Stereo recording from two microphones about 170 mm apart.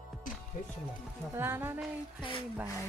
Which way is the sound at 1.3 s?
15° right (ahead or behind).